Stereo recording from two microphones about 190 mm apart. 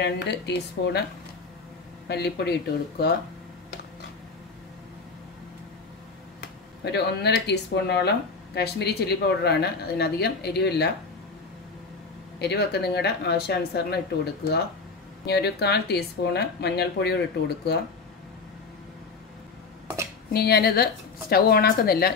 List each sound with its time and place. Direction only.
0.0 s speech: 65° left (ahead or behind)
2.0 s speech: 60° left (ahead or behind)
6.4 s speech: 60° left (ahead or behind)
12.4 s speech: 60° left (ahead or behind)
20.3 s speech: 55° left (ahead or behind)